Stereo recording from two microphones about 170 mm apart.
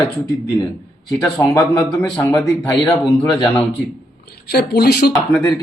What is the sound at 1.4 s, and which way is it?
A man's voice, 20° left (ahead or behind).